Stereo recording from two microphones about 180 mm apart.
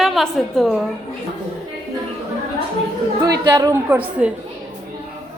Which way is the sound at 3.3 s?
20° right (ahead or behind).